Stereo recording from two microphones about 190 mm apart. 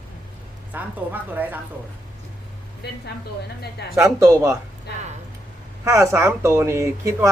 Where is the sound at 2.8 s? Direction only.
60° left (ahead or behind).